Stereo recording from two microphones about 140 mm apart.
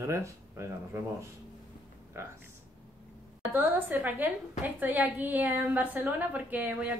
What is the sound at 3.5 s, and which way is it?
A woman's voice, 15° right (ahead or behind).